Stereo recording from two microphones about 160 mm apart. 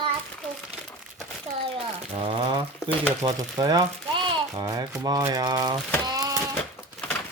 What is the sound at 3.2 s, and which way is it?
Speech, 20° right (ahead or behind).